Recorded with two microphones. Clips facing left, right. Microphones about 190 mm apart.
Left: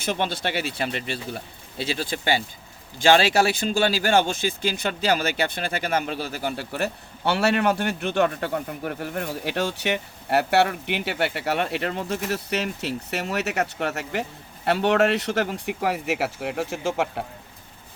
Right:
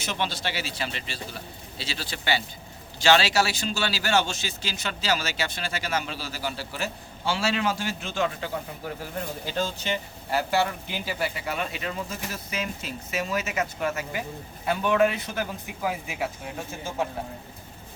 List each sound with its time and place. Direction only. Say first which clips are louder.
0.0 s speech: left 4 dB; 50° left (ahead or behind); by 17.2 s 80° left